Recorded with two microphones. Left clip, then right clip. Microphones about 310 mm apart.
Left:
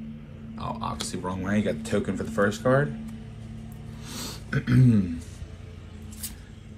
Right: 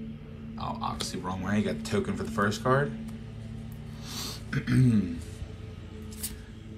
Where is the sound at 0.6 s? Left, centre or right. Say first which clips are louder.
Left 1 dB; centre.